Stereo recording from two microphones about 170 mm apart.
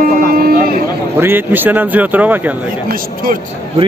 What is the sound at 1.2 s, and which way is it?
Speech, 10° right (ahead or behind).